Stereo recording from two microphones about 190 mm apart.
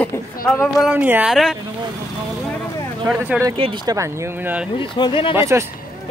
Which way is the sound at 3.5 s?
25° right (ahead or behind).